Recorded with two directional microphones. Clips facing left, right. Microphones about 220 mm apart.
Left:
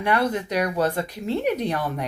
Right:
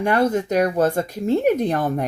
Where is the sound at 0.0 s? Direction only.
45° right (ahead or behind).